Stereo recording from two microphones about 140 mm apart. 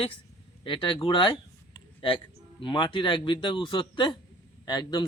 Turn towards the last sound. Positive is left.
turn(degrees=30)  # may be behind; listen again after turning